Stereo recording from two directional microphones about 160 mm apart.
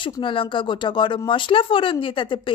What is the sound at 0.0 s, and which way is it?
Speech, 30° left (ahead or behind).